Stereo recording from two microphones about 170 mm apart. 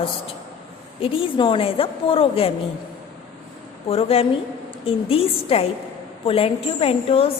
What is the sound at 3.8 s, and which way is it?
A woman's voice, 35° left (ahead or behind).